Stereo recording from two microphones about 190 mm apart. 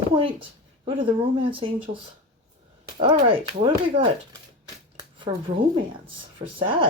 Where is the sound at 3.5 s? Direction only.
25° right (ahead or behind).